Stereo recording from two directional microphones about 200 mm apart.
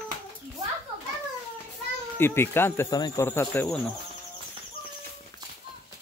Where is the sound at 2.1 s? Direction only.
10° left (ahead or behind).